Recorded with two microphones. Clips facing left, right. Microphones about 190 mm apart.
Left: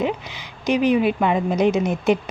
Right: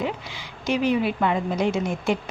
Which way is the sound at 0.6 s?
15° left (ahead or behind).